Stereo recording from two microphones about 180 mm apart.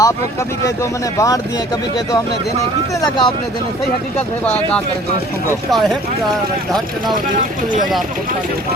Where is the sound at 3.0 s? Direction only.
25° left (ahead or behind).